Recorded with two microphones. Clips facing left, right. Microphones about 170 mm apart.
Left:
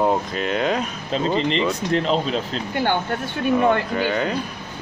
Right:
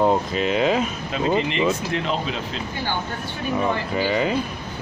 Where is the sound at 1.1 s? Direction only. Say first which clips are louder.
Left 1 dB; 35° left (ahead or behind).